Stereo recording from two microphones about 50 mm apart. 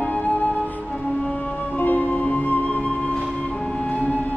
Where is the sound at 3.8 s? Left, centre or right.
Left.